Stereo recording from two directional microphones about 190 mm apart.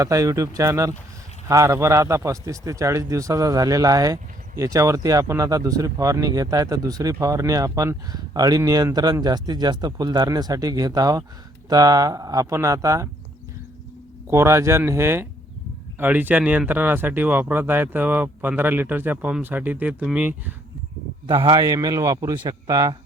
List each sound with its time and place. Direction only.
0.0 s speech: 15° right (ahead or behind)
14.3 s speech: 15° right (ahead or behind)
21.2 s speech: 25° right (ahead or behind)